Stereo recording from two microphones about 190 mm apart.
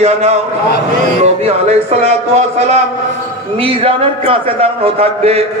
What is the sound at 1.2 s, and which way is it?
A man's voice, 35° right (ahead or behind).